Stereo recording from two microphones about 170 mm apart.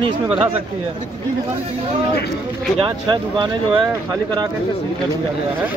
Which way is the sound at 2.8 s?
25° right (ahead or behind).